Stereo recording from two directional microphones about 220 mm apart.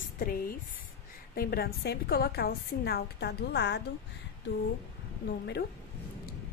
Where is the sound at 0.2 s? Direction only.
40° left (ahead or behind).